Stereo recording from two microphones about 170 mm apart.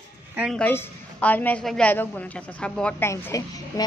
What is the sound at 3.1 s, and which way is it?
Speech, 20° left (ahead or behind).